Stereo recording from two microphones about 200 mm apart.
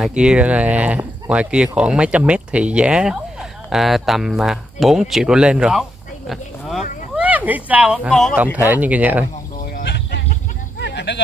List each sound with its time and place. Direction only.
0.0 s speech: 5° right (ahead or behind)
8.5 s speech: 10° right (ahead or behind)
9.8 s sheep: 60° left (ahead or behind)
10.8 s a sound: 60° left (ahead or behind)